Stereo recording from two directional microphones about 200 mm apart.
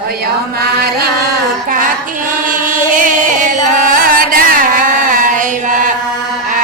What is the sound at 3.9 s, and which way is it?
Carnatic music, 45° right (ahead or behind).